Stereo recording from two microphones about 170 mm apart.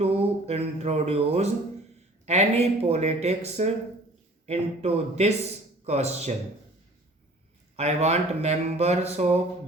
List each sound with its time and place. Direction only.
0.0 s speech: 40° right (ahead or behind)
7.8 s speech: 40° right (ahead or behind)